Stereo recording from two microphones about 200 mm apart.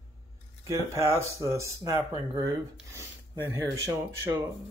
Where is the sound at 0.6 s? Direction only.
15° right (ahead or behind).